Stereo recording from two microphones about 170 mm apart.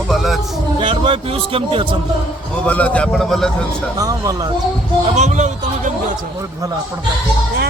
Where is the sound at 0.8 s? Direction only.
30° right (ahead or behind).